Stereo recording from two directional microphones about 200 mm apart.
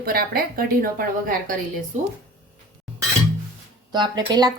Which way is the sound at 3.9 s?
20° right (ahead or behind).